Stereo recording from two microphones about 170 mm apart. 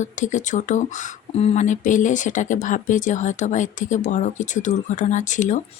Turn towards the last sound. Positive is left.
turn(degrees=45)  # may be behind; listen again after turning